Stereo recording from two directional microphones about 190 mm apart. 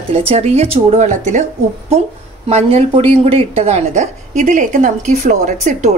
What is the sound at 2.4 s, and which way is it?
Speech, 35° right (ahead or behind).